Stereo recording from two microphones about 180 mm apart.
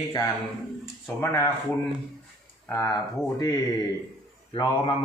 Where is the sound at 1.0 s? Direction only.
15° left (ahead or behind).